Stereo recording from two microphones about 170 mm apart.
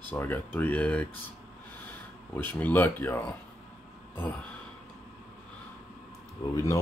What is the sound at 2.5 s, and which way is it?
Speech, 10° left (ahead or behind).